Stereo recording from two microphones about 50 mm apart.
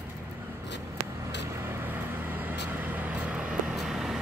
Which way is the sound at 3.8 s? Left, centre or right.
Centre.